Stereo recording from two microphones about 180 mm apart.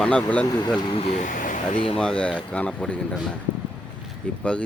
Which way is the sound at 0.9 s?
30° left (ahead or behind).